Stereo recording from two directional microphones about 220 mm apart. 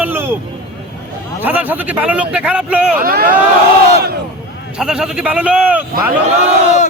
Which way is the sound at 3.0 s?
40° right (ahead or behind).